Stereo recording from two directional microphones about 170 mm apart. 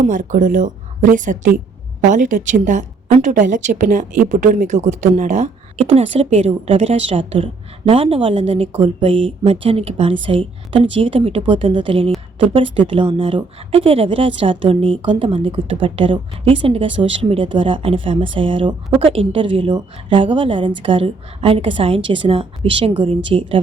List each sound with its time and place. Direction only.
0.0 s a woman's voice: 50° right (ahead or behind); by 23.6 s 30° right (ahead or behind)